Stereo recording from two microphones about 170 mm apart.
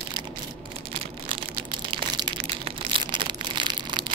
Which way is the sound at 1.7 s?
25° right (ahead or behind).